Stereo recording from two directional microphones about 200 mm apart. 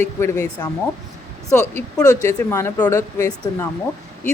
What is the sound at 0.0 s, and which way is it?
A woman's voice, 15° left (ahead or behind).